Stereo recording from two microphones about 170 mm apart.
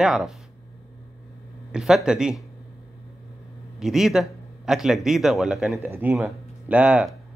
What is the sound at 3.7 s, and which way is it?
A man's voice, centre (ahead or behind).